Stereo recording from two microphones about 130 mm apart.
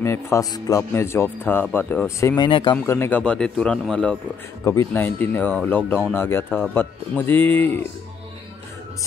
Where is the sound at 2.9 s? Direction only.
15° left (ahead or behind).